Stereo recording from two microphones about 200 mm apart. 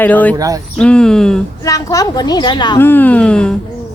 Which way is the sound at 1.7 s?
15° left (ahead or behind).